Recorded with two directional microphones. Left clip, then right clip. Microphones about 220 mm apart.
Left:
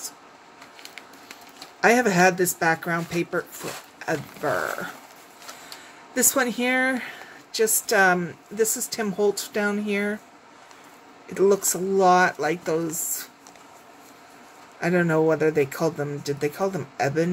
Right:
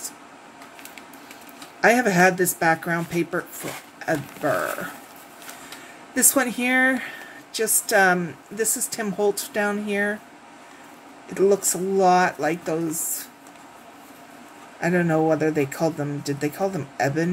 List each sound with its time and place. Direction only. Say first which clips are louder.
1.8 s speech: right 1 dB; 10° left (ahead or behind)
6.1 s speech: right 1 dB; 10° left (ahead or behind)
11.3 s speech: right 1 dB; 15° left (ahead or behind)
14.8 s speech: even; 15° left (ahead or behind)